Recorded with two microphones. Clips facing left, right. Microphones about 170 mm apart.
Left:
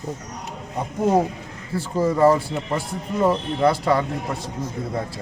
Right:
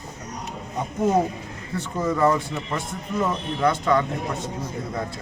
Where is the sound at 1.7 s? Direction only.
30° left (ahead or behind).